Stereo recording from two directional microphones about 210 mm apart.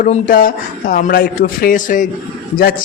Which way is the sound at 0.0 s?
40° left (ahead or behind).